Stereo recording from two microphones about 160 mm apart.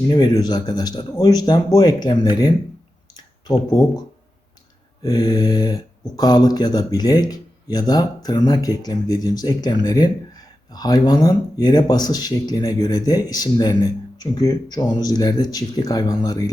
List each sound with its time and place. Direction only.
0.1 s speech: 25° left (ahead or behind)
5.0 s speech: 25° left (ahead or behind)